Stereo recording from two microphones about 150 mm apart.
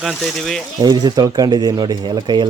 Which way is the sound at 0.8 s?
25° right (ahead or behind).